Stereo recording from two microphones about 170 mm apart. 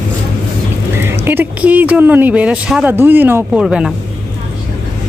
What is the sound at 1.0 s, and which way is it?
A woman's voice, 15° right (ahead or behind).